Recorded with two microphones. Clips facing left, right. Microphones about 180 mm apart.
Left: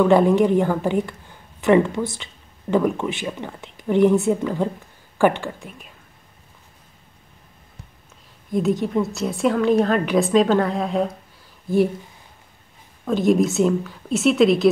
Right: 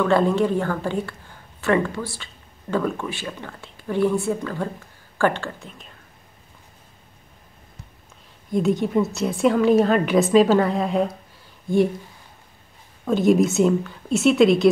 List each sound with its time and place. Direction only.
0.0 s a woman's voice: 15° left (ahead or behind)
8.5 s a woman's voice: centre (ahead or behind)
13.0 s a woman's voice: centre (ahead or behind)